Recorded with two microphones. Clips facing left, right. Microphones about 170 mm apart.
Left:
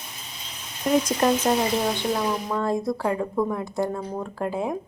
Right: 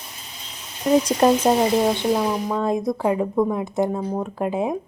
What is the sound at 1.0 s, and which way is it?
A woman's voice, 25° right (ahead or behind).